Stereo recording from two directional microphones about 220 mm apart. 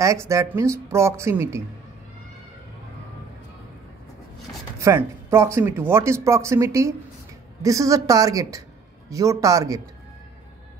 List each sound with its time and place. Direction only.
0.0 s speech: 15° right (ahead or behind)
4.7 s speech: 15° right (ahead or behind)